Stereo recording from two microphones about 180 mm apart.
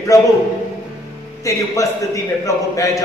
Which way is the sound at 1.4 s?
20° left (ahead or behind).